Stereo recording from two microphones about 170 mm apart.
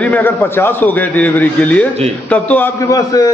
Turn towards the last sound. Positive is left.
turn(degrees=20)  # may be behind; listen again after turning